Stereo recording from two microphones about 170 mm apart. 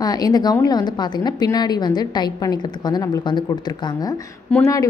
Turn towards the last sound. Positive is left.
turn(degrees=5)  # may be behind; listen again after turning